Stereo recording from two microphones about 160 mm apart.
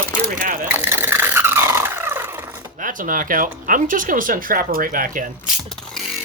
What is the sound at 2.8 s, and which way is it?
Speech, 60° right (ahead or behind).